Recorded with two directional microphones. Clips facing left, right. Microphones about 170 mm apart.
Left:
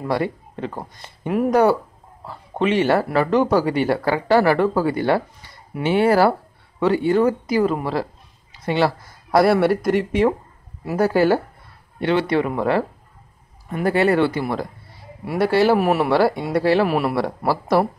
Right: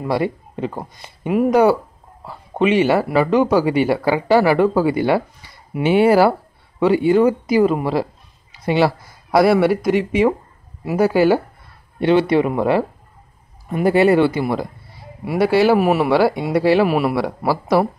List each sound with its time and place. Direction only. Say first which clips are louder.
0.0 s speech: right 2 dB; 10° right (ahead or behind)
12.0 s speech: right 4 dB; 15° right (ahead or behind)